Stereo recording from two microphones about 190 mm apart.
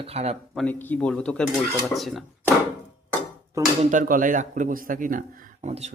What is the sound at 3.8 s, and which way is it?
Speech, 40° right (ahead or behind).